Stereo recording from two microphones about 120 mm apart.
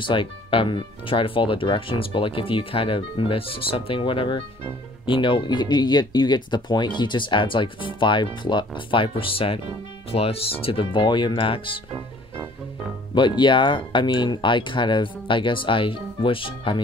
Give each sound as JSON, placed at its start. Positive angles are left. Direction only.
{"t": 0.0, "sound": "speech", "side_deg": 45}
{"t": 13.4, "sound": "speech", "side_deg": 40}